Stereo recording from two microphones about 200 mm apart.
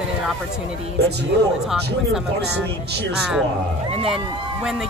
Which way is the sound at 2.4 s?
55° right (ahead or behind).